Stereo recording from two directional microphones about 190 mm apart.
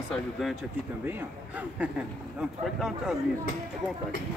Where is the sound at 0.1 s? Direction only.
Centre (ahead or behind).